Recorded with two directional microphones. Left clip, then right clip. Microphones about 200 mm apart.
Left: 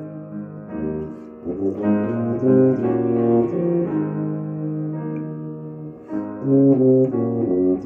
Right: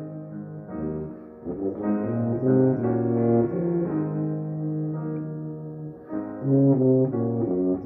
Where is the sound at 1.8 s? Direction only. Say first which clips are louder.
Left 5 dB; 45° left (ahead or behind).